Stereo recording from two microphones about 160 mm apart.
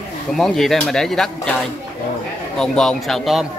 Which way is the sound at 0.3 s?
Centre (ahead or behind).